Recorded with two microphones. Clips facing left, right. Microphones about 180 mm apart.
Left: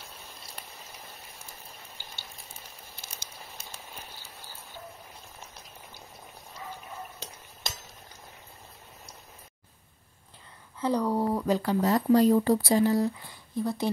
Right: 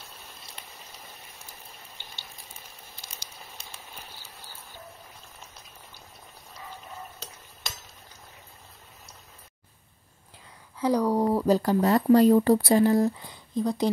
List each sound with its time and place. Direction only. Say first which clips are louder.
10.8 s speech: right 3 dB; 10° right (ahead or behind)
11.3 s speech: right 4 dB; 35° right (ahead or behind)
11.8 s speech: right 2 dB; 60° right (ahead or behind)
13.2 s speech: right 3 dB; 20° right (ahead or behind)